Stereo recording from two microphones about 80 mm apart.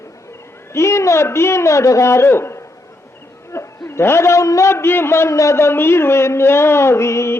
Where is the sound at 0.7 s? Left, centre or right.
Left.